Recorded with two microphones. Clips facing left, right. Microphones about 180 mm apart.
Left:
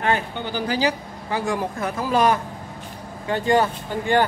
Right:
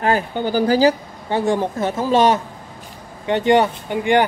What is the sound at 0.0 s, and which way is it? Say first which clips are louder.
Speech: right 5 dB; 40° right (ahead or behind).